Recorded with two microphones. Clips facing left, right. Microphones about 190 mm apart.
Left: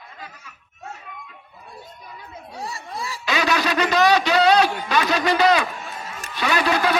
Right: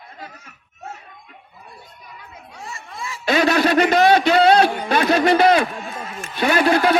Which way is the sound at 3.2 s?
55° right (ahead or behind).